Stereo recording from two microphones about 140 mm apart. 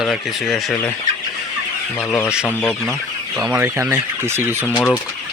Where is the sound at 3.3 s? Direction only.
5° right (ahead or behind).